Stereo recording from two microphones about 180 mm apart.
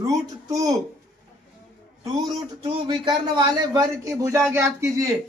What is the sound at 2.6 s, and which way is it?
A man's voice, 25° right (ahead or behind).